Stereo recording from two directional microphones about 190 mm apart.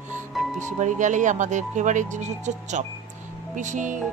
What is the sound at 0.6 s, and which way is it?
Speech, 40° right (ahead or behind).